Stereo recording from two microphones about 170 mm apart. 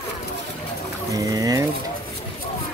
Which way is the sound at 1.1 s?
20° right (ahead or behind).